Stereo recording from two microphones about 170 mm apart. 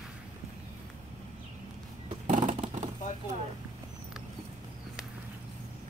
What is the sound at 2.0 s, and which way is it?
Vehicle, 45° right (ahead or behind).